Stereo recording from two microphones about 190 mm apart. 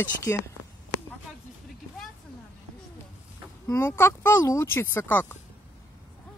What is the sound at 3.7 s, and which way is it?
Speech, 15° left (ahead or behind).